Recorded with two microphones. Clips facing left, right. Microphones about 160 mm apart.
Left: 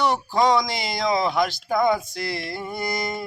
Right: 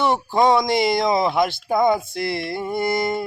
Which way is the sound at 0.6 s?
55° right (ahead or behind).